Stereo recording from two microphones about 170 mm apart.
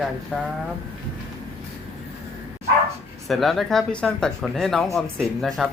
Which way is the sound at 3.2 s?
Centre (ahead or behind).